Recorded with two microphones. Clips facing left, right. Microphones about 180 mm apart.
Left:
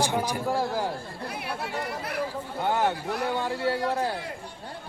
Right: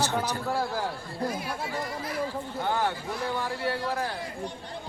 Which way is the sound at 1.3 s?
65° left (ahead or behind).